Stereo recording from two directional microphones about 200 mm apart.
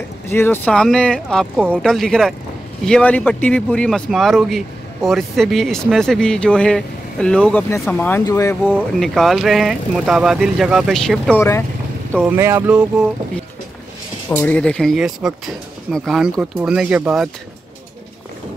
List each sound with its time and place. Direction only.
0.3 s speech: 10° left (ahead or behind)
8.7 s speech: centre (ahead or behind)
12.2 s speech: 10° right (ahead or behind)
14.3 s speech: 5° left (ahead or behind)